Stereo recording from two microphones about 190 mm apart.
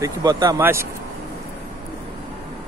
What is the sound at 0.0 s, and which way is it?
Speech, 20° right (ahead or behind).